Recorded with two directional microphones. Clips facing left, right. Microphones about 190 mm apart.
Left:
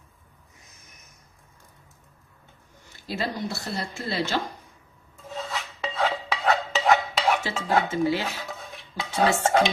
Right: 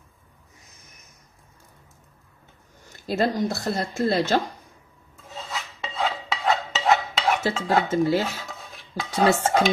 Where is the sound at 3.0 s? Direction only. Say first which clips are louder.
Right 7 dB; 45° right (ahead or behind).